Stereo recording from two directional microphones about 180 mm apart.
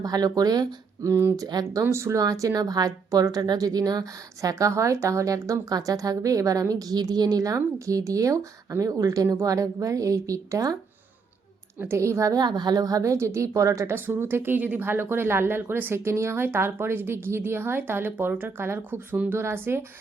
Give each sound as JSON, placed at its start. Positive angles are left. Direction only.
{"t": 0.0, "sound": "a woman's voice", "side_deg": -20}
{"t": 11.8, "sound": "a woman's voice", "side_deg": -15}